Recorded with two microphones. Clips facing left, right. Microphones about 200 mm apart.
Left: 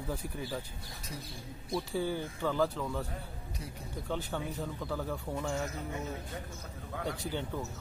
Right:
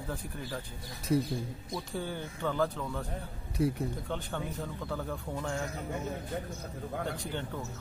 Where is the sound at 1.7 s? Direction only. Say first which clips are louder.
Left 4 dB; 5° left (ahead or behind).